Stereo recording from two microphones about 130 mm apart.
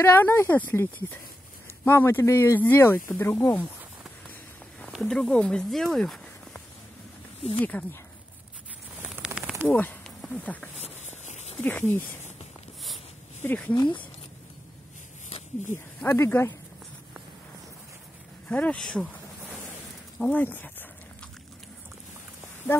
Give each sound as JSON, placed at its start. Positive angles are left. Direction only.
{"t": 0.0, "sound": "speech", "side_deg": 15}
{"t": 1.9, "sound": "speech", "side_deg": 15}
{"t": 5.0, "sound": "speech", "side_deg": 5}
{"t": 7.6, "sound": "speech", "side_deg": 10}
{"t": 9.0, "sound": "a sound", "side_deg": -10}
{"t": 9.7, "sound": "speech", "side_deg": 15}
{"t": 11.2, "sound": "a sound", "side_deg": 60}
{"t": 11.6, "sound": "speech", "side_deg": 15}
{"t": 13.4, "sound": "speech", "side_deg": 15}
{"t": 15.2, "sound": "a sound", "side_deg": 55}
{"t": 16.0, "sound": "speech", "side_deg": 15}
{"t": 18.5, "sound": "speech", "side_deg": 10}
{"t": 20.2, "sound": "speech", "side_deg": 10}